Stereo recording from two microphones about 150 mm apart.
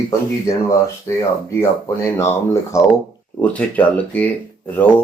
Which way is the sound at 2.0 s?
20° left (ahead or behind).